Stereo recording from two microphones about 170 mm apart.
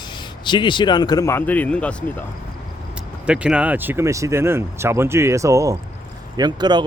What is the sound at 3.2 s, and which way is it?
Speech, 5° right (ahead or behind).